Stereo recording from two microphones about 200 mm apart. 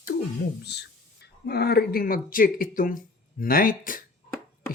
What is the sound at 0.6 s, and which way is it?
Speech, 55° left (ahead or behind).